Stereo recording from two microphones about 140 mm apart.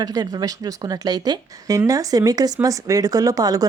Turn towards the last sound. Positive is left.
turn(degrees=-25)  # may be behind; listen again after turning